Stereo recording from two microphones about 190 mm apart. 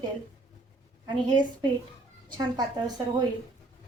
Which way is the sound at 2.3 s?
20° right (ahead or behind).